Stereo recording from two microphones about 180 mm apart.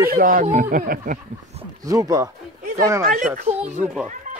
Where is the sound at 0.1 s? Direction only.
50° right (ahead or behind).